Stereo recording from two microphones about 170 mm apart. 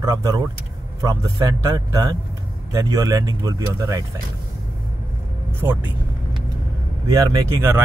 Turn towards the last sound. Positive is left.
turn(degrees=-20)  # may be behind; listen again after turning